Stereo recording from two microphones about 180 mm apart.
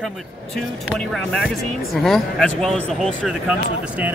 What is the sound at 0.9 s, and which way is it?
Speech, centre (ahead or behind).